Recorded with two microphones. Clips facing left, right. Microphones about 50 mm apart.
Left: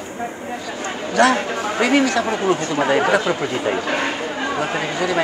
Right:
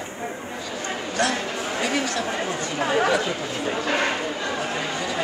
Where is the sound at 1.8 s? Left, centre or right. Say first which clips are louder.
Left 9 dB; left.